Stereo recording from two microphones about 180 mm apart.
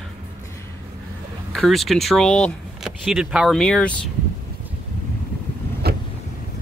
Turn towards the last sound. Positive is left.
turn(degrees=-60)  # may be behind; listen again after turning